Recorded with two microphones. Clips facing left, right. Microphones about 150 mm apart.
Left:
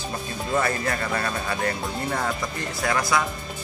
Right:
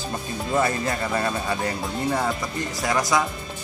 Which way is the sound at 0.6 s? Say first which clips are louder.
Right 2 dB; 15° right (ahead or behind).